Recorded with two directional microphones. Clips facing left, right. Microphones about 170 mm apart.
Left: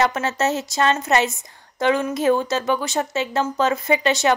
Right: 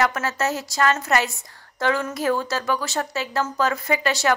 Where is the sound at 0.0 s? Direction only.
25° left (ahead or behind).